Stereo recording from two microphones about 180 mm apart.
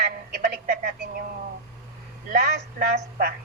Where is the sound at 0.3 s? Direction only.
55° right (ahead or behind).